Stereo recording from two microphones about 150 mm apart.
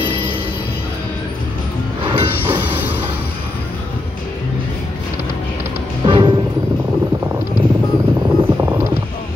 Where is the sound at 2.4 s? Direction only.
15° right (ahead or behind).